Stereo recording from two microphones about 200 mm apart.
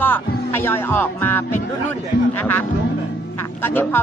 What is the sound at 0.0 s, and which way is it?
A man's voice, 10° left (ahead or behind).